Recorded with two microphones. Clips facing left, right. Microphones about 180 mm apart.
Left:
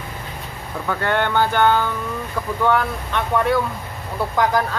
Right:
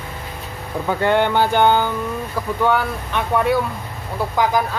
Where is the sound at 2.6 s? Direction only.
5° right (ahead or behind).